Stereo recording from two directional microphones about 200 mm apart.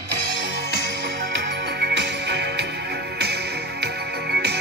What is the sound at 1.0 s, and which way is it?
Music, 60° right (ahead or behind).